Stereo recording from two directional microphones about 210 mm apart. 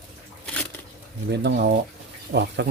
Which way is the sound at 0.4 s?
5° left (ahead or behind).